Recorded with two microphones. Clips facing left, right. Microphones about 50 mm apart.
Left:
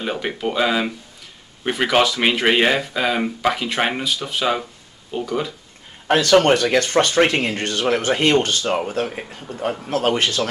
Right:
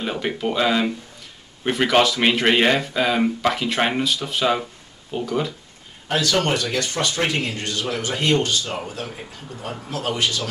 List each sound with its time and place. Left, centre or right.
0.0 s speech: centre
6.0 s speech: left